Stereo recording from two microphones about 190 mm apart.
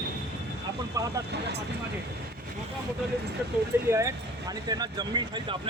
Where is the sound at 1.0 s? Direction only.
15° right (ahead or behind).